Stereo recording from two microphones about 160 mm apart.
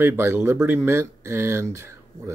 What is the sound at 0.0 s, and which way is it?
Speech, 15° right (ahead or behind).